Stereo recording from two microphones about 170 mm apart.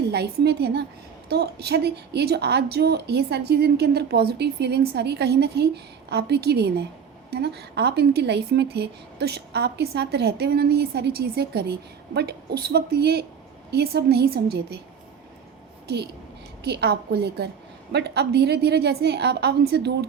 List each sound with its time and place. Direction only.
0.1 s speech: 75° right (ahead or behind)
1.3 s speech: 70° right (ahead or behind)
16.6 s speech: 75° right (ahead or behind)